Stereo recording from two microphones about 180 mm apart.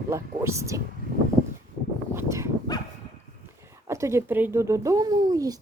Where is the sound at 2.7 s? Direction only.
20° left (ahead or behind).